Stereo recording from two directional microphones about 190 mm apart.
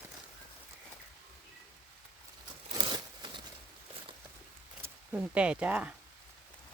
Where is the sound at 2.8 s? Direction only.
25° right (ahead or behind).